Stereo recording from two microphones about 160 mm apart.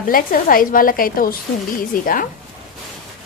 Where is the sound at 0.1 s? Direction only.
65° left (ahead or behind).